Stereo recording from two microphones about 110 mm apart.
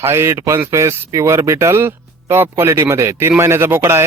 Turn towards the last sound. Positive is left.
turn(degrees=-20)  # may be behind; listen again after turning